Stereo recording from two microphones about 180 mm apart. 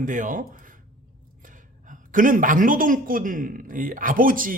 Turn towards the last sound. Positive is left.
turn(degrees=-50)  # may be behind; listen again after turning